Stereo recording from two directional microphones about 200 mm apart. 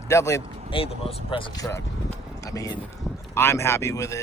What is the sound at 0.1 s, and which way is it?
Speech, 15° left (ahead or behind).